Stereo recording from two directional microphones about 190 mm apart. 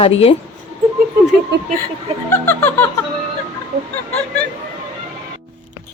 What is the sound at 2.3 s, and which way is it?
Snicker, 10° left (ahead or behind).